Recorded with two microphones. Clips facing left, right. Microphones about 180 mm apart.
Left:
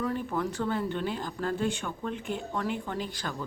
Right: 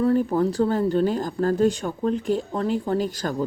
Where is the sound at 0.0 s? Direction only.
35° right (ahead or behind).